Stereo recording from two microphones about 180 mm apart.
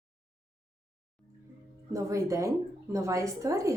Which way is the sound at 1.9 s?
15° right (ahead or behind).